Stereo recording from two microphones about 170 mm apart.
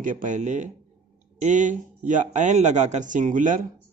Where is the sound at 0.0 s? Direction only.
50° right (ahead or behind).